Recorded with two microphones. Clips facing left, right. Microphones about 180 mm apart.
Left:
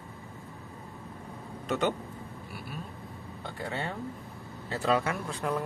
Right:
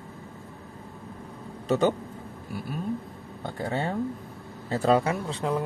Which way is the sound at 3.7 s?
40° right (ahead or behind).